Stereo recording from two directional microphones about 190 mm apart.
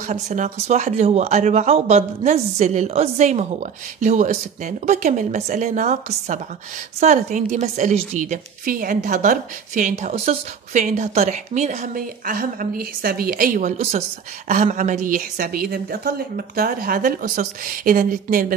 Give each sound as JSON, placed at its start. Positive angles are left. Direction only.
{"t": 0.0, "sound": "a woman's voice", "side_deg": -40}